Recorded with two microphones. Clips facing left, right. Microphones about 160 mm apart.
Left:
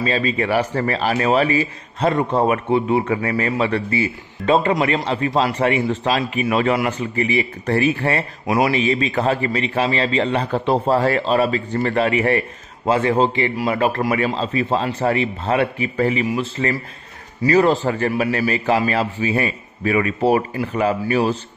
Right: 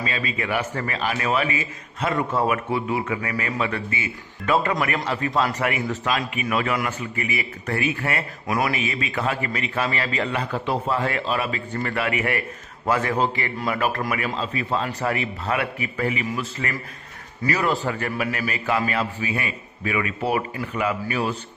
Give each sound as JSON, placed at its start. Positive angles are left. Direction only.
{"t": 0.0, "sound": "a man's voice", "side_deg": 35}